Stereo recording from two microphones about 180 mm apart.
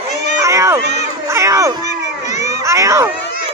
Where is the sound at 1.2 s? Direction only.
15° right (ahead or behind).